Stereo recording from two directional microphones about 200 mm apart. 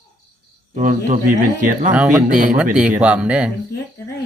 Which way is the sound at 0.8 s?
40° right (ahead or behind).